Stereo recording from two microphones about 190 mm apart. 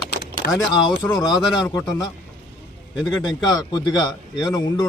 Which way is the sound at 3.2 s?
20° left (ahead or behind).